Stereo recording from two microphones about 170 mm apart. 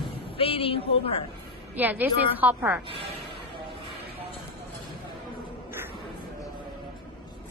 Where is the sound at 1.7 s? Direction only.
10° right (ahead or behind).